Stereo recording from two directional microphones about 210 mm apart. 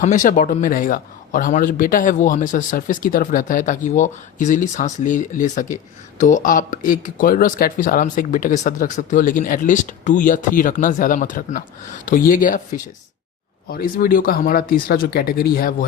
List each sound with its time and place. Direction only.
0.0 s a man's voice: 35° left (ahead or behind)